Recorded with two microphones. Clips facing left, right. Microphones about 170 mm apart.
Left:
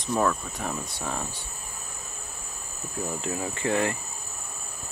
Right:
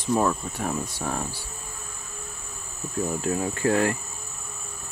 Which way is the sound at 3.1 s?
20° left (ahead or behind).